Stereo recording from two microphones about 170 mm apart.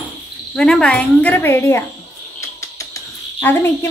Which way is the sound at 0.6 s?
5° left (ahead or behind).